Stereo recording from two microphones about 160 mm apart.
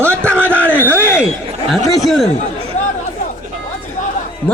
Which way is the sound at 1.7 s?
Centre (ahead or behind).